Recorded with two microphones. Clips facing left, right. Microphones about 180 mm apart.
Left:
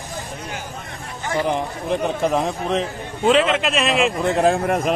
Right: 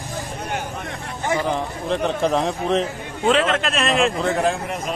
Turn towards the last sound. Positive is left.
turn(degrees=60)  # may be behind; listen again after turning